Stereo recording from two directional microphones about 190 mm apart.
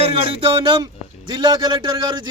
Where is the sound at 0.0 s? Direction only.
30° right (ahead or behind).